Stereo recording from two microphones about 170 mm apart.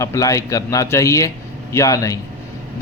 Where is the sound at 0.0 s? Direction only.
20° left (ahead or behind).